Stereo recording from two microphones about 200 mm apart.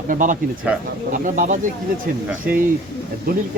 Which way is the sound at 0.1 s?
40° right (ahead or behind).